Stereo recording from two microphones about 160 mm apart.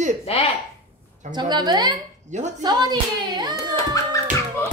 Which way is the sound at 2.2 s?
45° right (ahead or behind).